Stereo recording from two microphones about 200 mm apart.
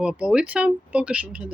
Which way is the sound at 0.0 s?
5° right (ahead or behind).